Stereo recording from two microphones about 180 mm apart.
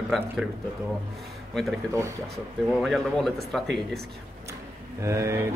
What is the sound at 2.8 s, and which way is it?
Speech, centre (ahead or behind).